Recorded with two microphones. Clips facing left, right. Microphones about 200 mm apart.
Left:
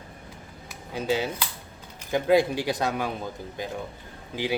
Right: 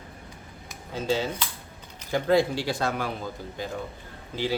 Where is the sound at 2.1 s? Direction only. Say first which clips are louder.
Left 1 dB; 15° left (ahead or behind).